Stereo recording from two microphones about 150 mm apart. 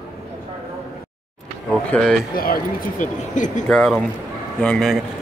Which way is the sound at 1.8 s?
5° left (ahead or behind).